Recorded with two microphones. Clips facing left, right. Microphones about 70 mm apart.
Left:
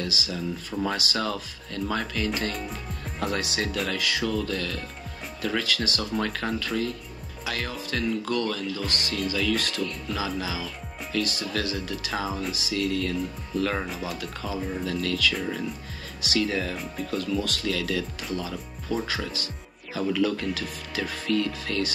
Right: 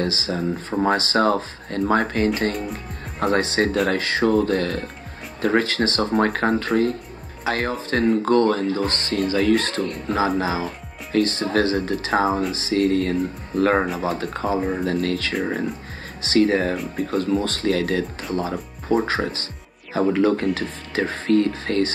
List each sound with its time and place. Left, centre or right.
0.0 s speech: right